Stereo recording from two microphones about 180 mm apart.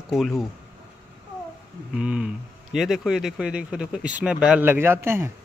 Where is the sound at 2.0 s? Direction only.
5° right (ahead or behind).